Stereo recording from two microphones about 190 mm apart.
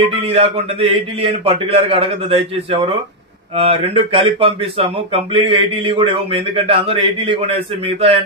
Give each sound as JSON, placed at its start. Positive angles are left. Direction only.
{"t": 0.0, "sound": "speech", "side_deg": -30}